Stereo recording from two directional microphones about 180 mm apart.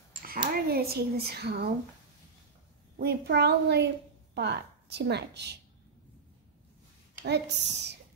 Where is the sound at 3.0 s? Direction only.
60° right (ahead or behind).